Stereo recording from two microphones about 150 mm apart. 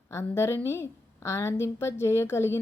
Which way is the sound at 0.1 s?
15° left (ahead or behind).